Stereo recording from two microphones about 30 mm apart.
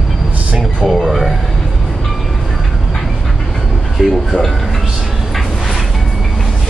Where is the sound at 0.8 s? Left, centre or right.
Centre.